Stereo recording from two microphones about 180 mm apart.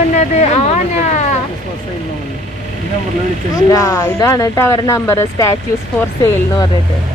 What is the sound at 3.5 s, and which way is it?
Speech, 20° left (ahead or behind).